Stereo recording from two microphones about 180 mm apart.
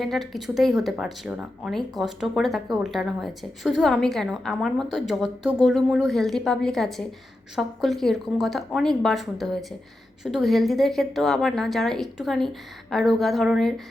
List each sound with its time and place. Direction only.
0.0 s speech: centre (ahead or behind)